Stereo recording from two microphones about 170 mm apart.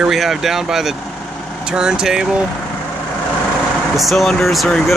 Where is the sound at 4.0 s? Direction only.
Centre (ahead or behind).